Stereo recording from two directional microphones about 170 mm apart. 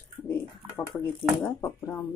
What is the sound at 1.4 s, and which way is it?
Speech, 15° left (ahead or behind).